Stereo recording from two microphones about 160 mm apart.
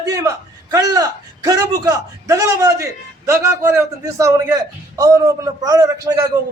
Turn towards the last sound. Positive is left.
turn(degrees=-20)  # may be behind; listen again after turning